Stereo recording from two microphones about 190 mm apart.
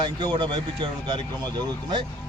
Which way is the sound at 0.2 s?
25° right (ahead or behind).